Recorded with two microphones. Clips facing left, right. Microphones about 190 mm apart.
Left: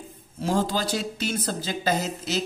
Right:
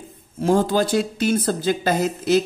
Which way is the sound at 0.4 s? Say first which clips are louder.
Right 7 dB; 55° right (ahead or behind).